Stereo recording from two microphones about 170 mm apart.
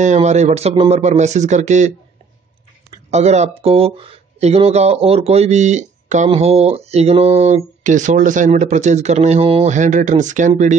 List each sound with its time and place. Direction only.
0.0 s speech: 45° right (ahead or behind)
3.1 s speech: 40° right (ahead or behind)